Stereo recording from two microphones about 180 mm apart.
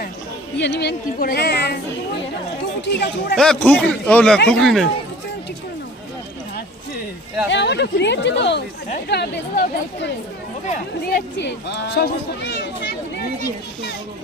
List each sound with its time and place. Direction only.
0.5 s a child's voice: 70° left (ahead or behind)
2.8 s a child's voice: 70° left (ahead or behind)
3.3 s speech: 5° left (ahead or behind)
7.5 s a child's voice: 70° left (ahead or behind)
11.1 s a child's voice: 70° left (ahead or behind)